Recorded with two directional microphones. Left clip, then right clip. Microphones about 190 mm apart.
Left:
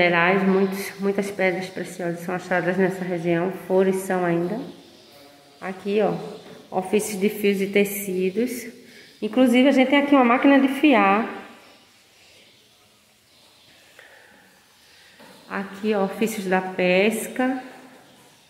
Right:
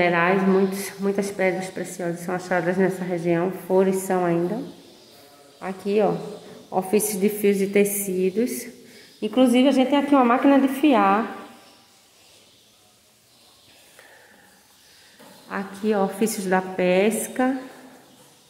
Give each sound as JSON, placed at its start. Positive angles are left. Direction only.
{"t": 0.0, "sound": "speech", "side_deg": 0}
{"t": 5.6, "sound": "a woman's voice", "side_deg": -10}
{"t": 15.4, "sound": "a woman's voice", "side_deg": -5}